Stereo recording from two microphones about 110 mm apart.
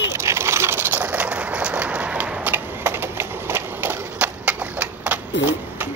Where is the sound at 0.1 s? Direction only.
25° right (ahead or behind).